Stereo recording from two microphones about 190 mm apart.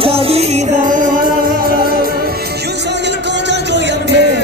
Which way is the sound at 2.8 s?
65° right (ahead or behind).